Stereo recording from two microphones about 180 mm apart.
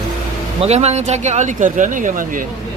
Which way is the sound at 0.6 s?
35° right (ahead or behind).